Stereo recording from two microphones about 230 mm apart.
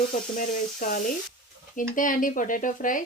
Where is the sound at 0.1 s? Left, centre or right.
Left.